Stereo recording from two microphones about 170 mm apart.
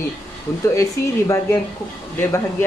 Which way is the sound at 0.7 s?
15° left (ahead or behind).